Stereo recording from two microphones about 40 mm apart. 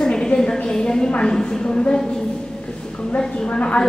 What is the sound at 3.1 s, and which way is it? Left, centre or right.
Speech, left.